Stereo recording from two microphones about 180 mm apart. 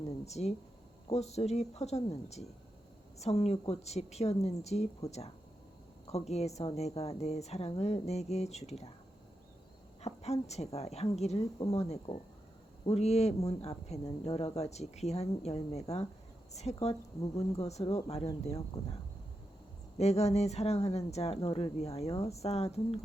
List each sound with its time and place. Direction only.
0.3 s a woman's voice: 35° left (ahead or behind)
6.1 s a woman's voice: 35° left (ahead or behind)
10.0 s a woman's voice: 35° left (ahead or behind)
20.0 s a woman's voice: 35° left (ahead or behind)